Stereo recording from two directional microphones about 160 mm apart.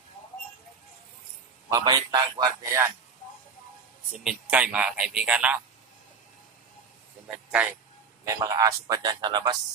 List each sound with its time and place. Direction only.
1.7 s a man's voice: 25° right (ahead or behind)
4.1 s speech: 5° right (ahead or behind)
7.6 s speech: 10° right (ahead or behind)
8.3 s a man's voice: 20° right (ahead or behind)